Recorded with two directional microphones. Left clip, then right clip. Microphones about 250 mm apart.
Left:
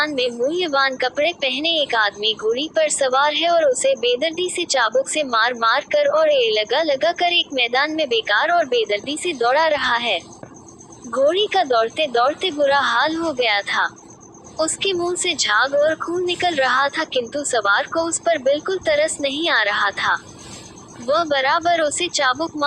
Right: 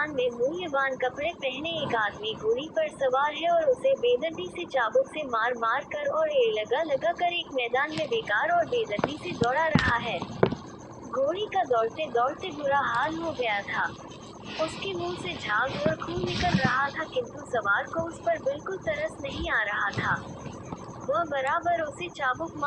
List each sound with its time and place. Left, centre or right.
0.0 s a woman's voice: left
11.3 s a woman's voice: left